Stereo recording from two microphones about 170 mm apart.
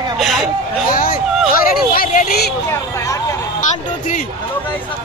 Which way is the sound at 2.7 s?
15° left (ahead or behind).